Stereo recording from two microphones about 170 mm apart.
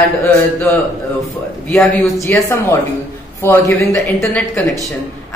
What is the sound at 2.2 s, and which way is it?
A man's voice, 15° left (ahead or behind).